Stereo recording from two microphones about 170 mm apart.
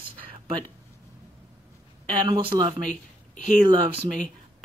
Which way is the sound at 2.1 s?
30° right (ahead or behind).